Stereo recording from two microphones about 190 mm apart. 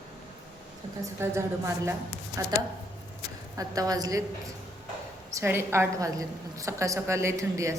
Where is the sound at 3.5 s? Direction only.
20° right (ahead or behind).